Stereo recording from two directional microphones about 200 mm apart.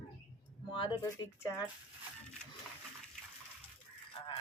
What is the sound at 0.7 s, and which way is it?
Speech, 25° left (ahead or behind).